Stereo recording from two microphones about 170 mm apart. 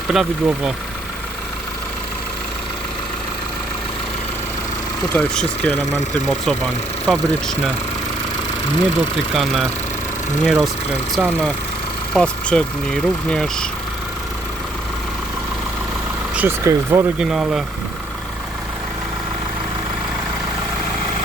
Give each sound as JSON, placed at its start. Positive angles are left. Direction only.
{"t": 0.1, "sound": "speech", "side_deg": -5}
{"t": 5.1, "sound": "speech", "side_deg": 5}
{"t": 7.1, "sound": "speech", "side_deg": 5}
{"t": 9.3, "sound": "speech", "side_deg": 0}
{"t": 16.3, "sound": "speech", "side_deg": -10}
{"t": 17.2, "sound": "speech", "side_deg": -5}